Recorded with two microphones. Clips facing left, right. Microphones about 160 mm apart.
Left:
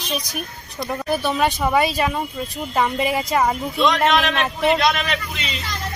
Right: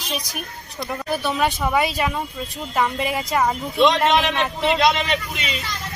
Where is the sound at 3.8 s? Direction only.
25° right (ahead or behind).